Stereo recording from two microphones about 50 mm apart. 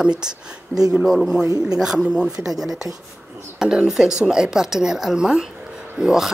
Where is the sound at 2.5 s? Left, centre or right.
Centre.